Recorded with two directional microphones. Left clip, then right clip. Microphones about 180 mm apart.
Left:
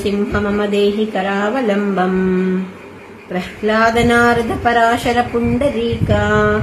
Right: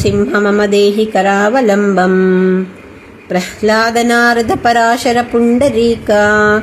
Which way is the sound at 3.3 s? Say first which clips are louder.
Right 5 dB; 45° right (ahead or behind).